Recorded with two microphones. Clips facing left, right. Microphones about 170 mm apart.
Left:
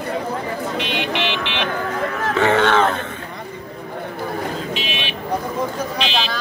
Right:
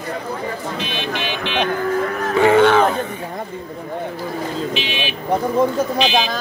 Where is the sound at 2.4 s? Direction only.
10° right (ahead or behind).